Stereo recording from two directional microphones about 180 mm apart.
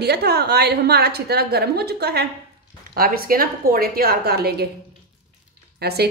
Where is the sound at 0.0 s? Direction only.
65° right (ahead or behind).